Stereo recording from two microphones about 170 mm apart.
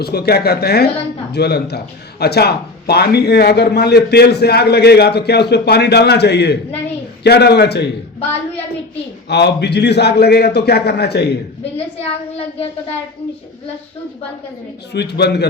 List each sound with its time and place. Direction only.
0.0 s a man's voice: 70° left (ahead or behind)
9.3 s speech: 80° left
12.0 s a child's voice: 35° left (ahead or behind)
14.9 s a man's voice: 80° left